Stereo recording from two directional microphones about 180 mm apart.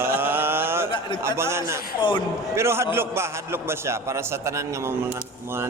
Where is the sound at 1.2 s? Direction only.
15° right (ahead or behind).